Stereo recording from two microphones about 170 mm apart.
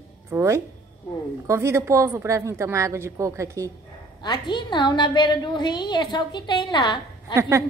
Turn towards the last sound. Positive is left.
turn(degrees=-15)  # may be behind; listen again after turning